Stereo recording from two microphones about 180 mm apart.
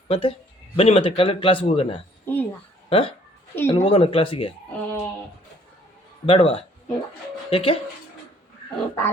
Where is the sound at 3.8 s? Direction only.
30° left (ahead or behind).